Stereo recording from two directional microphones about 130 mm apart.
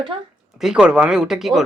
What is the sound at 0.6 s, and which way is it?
Speech, 5° right (ahead or behind).